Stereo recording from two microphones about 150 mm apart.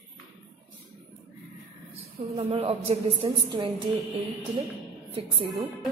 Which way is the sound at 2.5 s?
45° right (ahead or behind).